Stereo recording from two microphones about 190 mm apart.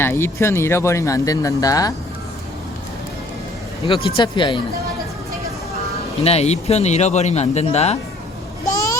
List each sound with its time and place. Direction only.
0.0 s speech: 10° left (ahead or behind)
3.8 s speech: 25° left (ahead or behind)
6.2 s a man's voice: 35° left (ahead or behind)
8.7 s a sound: 20° left (ahead or behind)